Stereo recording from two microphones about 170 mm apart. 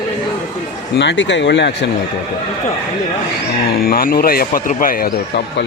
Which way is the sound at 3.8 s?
60° left (ahead or behind).